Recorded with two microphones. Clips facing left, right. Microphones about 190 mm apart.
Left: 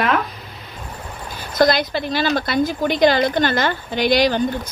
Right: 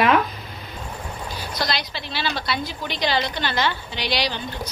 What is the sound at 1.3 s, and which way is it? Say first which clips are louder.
A woman's voice: left 11 dB; 50° left (ahead or behind).